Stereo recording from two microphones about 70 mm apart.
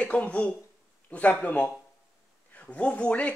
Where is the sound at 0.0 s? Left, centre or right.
Left.